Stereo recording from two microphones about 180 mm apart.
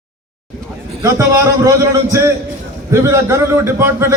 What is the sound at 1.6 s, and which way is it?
A man's voice, 15° right (ahead or behind).